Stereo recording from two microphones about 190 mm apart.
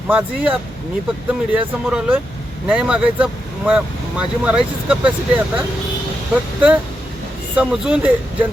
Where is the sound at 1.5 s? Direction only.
10° right (ahead or behind).